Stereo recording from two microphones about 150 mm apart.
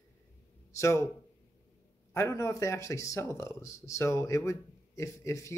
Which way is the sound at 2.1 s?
20° left (ahead or behind).